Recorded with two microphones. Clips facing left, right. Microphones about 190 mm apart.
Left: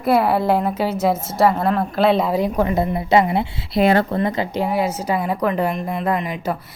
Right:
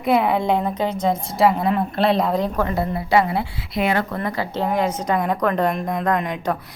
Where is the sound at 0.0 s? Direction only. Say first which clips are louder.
Left 2 dB; 5° left (ahead or behind); by 3.4 s 20° left (ahead or behind).